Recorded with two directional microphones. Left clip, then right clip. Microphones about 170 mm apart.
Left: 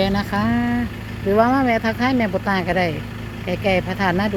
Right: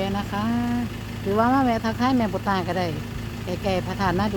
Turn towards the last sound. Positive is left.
turn(degrees=10)  # may be behind; listen again after turning